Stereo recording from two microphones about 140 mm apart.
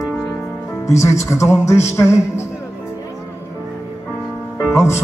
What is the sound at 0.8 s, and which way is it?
Speech, 20° left (ahead or behind).